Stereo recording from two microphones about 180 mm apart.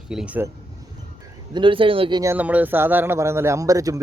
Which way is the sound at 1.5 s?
30° right (ahead or behind).